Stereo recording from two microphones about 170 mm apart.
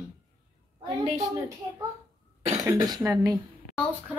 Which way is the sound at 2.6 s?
20° right (ahead or behind).